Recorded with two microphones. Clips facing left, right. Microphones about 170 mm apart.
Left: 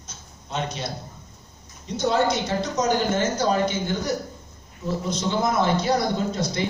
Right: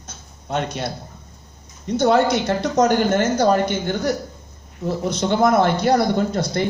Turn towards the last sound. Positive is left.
turn(degrees=-55)  # may be behind; listen again after turning